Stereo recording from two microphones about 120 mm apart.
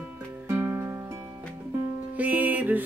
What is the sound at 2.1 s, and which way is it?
Music, 15° right (ahead or behind).